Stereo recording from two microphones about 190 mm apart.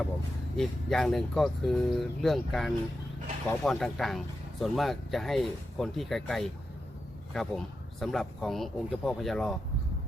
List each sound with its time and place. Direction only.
0.5 s speech: centre (ahead or behind)